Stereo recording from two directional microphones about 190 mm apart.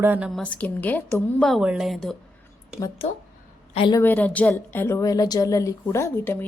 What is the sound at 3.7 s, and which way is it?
Speech, 25° left (ahead or behind).